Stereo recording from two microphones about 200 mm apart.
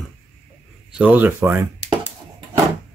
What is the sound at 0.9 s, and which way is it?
Speech, 10° right (ahead or behind).